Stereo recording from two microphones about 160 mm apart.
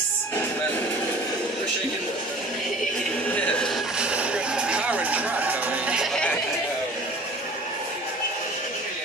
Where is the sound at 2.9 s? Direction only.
5° left (ahead or behind).